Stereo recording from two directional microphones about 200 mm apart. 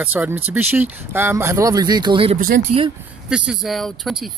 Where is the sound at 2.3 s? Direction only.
45° right (ahead or behind).